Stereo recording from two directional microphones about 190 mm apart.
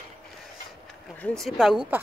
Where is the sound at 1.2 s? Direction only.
Centre (ahead or behind).